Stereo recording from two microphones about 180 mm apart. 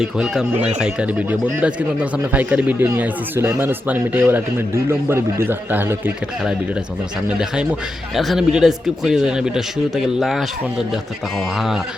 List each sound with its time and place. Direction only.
0.0 s speech: 5° right (ahead or behind)
7.3 s speech: 5° right (ahead or behind)